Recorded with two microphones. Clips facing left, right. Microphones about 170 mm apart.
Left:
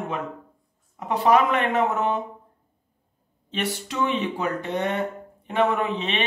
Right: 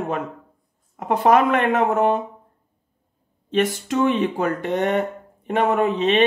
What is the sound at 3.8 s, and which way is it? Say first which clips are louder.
Speech: right 6 dB; 45° right (ahead or behind).